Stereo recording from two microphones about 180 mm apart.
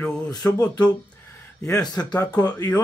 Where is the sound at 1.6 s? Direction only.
20° left (ahead or behind).